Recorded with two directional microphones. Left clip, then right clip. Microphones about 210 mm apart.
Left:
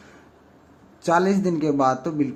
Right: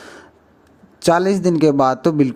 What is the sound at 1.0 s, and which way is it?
A man's voice, 35° right (ahead or behind).